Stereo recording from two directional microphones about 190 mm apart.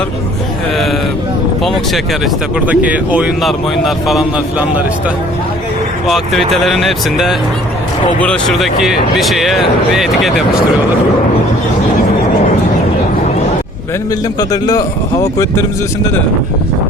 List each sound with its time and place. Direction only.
2.6 s speech: 5° right (ahead or behind)
6.1 s speech: centre (ahead or behind)
14.3 s speech: 20° left (ahead or behind)